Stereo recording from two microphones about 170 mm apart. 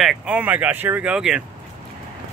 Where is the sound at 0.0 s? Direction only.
5° right (ahead or behind).